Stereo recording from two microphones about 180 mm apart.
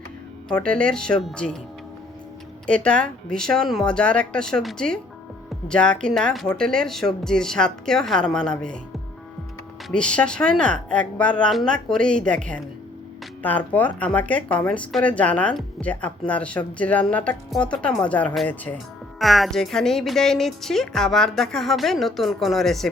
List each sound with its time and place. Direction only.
0.4 s a woman's voice: 5° left (ahead or behind)
2.6 s a woman's voice: 5° left (ahead or behind)
9.9 s a woman's voice: 5° left (ahead or behind)